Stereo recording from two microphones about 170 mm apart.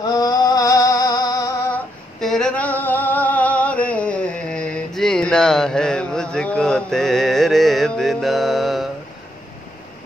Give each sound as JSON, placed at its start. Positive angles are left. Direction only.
{"t": 0.2, "sound": "music", "side_deg": 25}
{"t": 1.7, "sound": "singing", "side_deg": 5}